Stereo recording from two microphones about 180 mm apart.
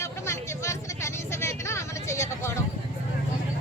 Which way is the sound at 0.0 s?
15° left (ahead or behind).